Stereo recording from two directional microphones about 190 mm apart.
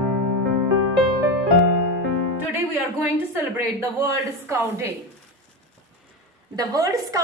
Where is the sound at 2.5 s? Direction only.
10° right (ahead or behind).